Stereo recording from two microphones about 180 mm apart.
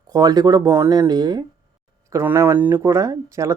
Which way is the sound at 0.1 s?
20° right (ahead or behind).